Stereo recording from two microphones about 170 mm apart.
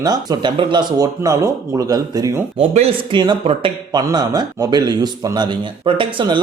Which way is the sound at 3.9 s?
25° right (ahead or behind).